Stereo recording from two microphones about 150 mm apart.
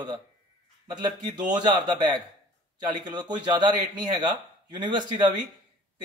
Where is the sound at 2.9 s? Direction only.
30° right (ahead or behind).